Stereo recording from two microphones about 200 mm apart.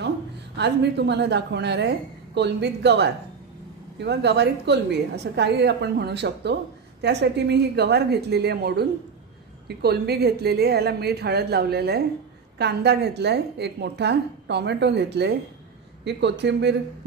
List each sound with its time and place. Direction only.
0.6 s a woman's voice: 55° right (ahead or behind)